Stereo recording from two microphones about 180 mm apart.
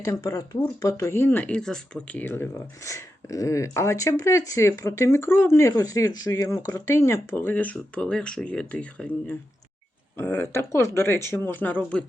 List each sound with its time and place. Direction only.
0.0 s speech: 20° left (ahead or behind)